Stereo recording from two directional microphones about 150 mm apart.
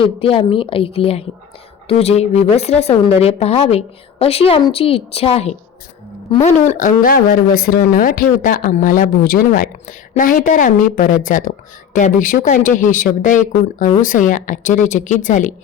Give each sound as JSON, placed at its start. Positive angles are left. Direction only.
{"t": 0.0, "sound": "a woman's voice", "side_deg": 35}